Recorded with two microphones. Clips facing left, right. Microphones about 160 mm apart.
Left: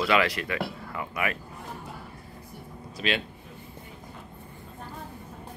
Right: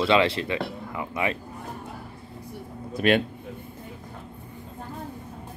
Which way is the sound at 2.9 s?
55° right (ahead or behind).